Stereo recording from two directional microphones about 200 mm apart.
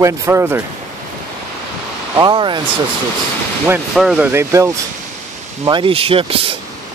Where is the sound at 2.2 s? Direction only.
25° right (ahead or behind).